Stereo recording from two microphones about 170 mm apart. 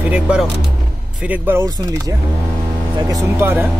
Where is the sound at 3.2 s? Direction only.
15° right (ahead or behind).